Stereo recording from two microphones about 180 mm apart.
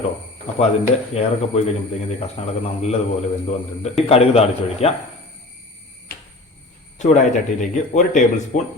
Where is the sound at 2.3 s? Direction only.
35° left (ahead or behind).